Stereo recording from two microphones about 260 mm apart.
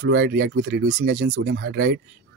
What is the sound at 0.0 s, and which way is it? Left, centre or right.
Speech, right.